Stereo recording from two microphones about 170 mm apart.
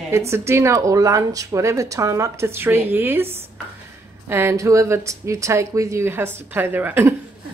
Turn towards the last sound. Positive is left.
turn(degrees=-10)  # may be behind; listen again after turning